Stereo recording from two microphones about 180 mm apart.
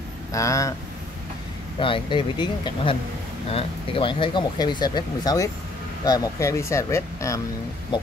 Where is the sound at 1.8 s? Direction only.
30° left (ahead or behind).